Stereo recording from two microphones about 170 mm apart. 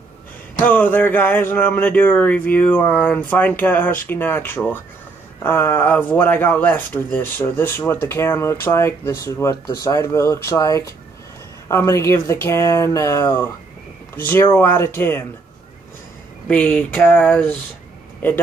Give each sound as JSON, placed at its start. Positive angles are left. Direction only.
{"t": 0.7, "sound": "speech", "side_deg": 10}
{"t": 16.4, "sound": "speech", "side_deg": 10}